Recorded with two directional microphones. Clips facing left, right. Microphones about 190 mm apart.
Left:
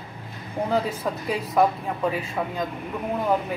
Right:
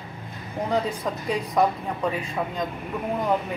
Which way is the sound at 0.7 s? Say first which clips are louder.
Even; 5° left (ahead or behind).